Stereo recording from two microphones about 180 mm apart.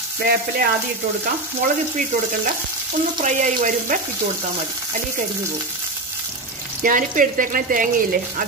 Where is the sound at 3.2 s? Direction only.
45° right (ahead or behind).